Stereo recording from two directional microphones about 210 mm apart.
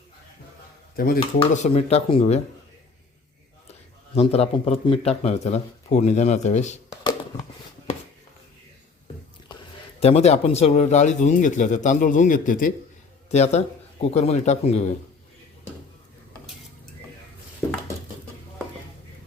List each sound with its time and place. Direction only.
0.9 s speech: 45° left (ahead or behind)
1.4 s speech: 30° left (ahead or behind)
4.1 s speech: 30° left (ahead or behind)
10.0 s speech: 30° left (ahead or behind)